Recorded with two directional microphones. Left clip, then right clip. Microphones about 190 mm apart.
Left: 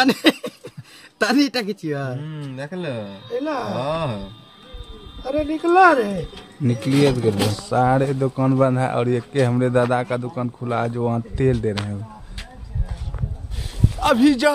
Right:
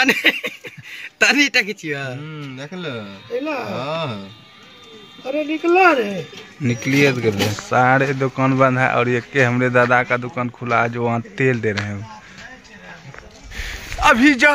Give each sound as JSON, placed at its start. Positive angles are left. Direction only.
{"t": 0.0, "sound": "a man's voice", "side_deg": 35}
{"t": 3.0, "sound": "speech", "side_deg": 10}
{"t": 3.7, "sound": "a man's voice", "side_deg": 30}
{"t": 5.2, "sound": "a man's voice", "side_deg": 10}
{"t": 7.5, "sound": "a man's voice", "side_deg": -10}
{"t": 14.0, "sound": "a man's voice", "side_deg": 0}